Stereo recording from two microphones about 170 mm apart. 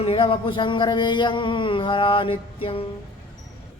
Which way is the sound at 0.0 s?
35° left (ahead or behind).